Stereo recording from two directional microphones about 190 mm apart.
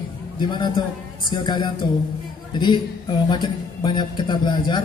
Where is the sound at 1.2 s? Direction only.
25° left (ahead or behind).